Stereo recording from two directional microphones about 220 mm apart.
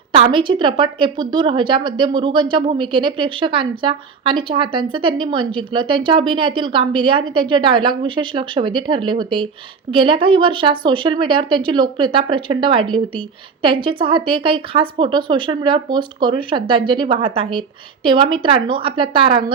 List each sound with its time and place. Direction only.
0.1 s a woman's voice: 25° right (ahead or behind)